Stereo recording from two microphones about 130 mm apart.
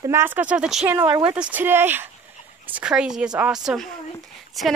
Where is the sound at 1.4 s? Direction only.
15° right (ahead or behind).